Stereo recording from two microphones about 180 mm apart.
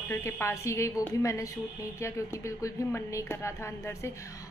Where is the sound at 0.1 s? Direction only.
15° left (ahead or behind).